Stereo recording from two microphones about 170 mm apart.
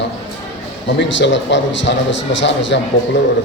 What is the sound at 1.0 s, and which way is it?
A man's voice, 90° left.